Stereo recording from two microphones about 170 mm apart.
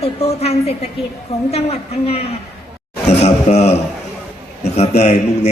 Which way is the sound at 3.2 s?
40° left (ahead or behind).